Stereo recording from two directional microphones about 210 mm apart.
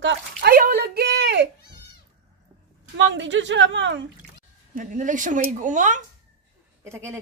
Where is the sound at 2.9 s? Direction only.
60° right (ahead or behind).